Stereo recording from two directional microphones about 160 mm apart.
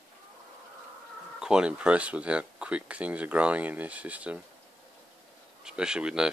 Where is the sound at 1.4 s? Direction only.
5° right (ahead or behind).